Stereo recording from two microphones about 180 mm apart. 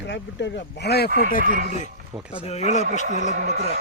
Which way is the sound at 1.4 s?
50° right (ahead or behind).